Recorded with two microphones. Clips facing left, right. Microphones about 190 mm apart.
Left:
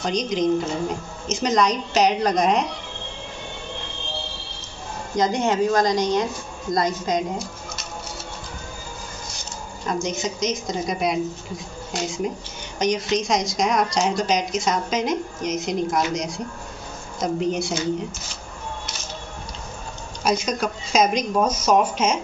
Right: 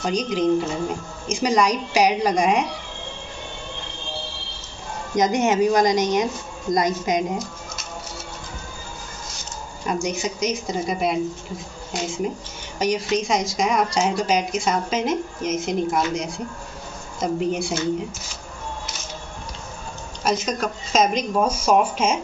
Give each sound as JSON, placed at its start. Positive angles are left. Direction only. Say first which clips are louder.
{"t": 0.0, "sound": "a woman's voice", "louder": "right 1 dB", "side_deg": -5}
{"t": 5.1, "sound": "a woman's voice", "louder": "right 2 dB", "side_deg": -15}
{"t": 9.8, "sound": "a woman's voice", "louder": "right 1 dB", "side_deg": -10}
{"t": 20.2, "sound": "speech", "louder": "left 1 dB", "side_deg": 0}